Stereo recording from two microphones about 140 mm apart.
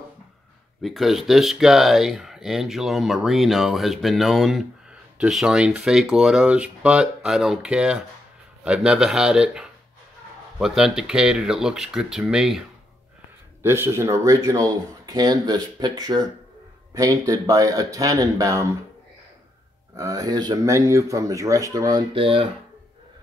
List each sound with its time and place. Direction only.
0.8 s speech: centre (ahead or behind)
13.6 s speech: 15° right (ahead or behind)
20.0 s speech: 25° right (ahead or behind)
22.1 s speech: 40° right (ahead or behind)